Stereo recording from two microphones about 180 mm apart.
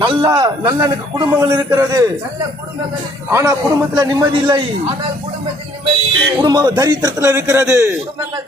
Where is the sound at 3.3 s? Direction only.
15° right (ahead or behind).